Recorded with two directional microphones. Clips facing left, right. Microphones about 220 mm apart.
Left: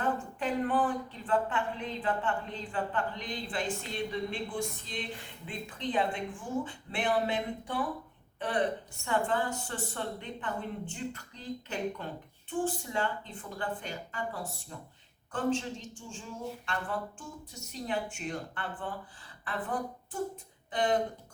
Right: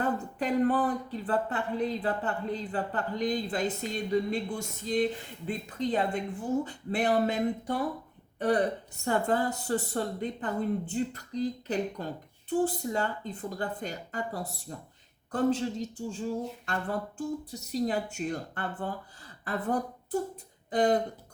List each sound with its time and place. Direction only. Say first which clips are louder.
0.0 s a woman's voice: right 2 dB; 40° right (ahead or behind)